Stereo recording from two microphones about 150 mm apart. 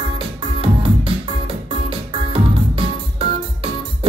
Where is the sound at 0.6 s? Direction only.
40° right (ahead or behind).